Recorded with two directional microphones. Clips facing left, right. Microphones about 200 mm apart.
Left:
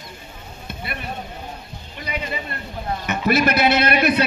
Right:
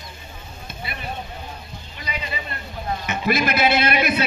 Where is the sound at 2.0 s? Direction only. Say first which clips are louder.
Left 4 dB; 55° left (ahead or behind).